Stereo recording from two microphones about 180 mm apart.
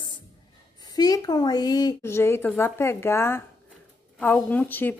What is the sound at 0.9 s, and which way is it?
A woman's voice, 20° left (ahead or behind).